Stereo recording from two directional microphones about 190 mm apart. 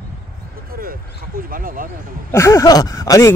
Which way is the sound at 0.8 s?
50° right (ahead or behind).